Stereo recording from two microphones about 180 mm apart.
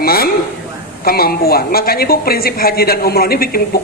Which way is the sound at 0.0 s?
55° left (ahead or behind).